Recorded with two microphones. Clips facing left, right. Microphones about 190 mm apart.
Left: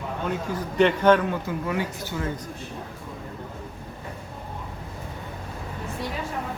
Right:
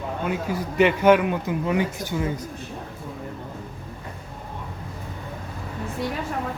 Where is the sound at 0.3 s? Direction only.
10° right (ahead or behind).